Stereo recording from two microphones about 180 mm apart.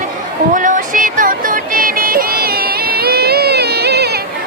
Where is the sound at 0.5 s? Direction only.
45° right (ahead or behind); by 4.0 s 65° right (ahead or behind).